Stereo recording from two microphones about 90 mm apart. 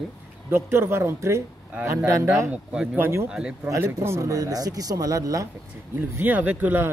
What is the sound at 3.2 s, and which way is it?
Speech, 10° right (ahead or behind).